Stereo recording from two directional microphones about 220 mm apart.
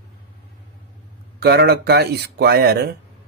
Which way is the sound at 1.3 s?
45° right (ahead or behind).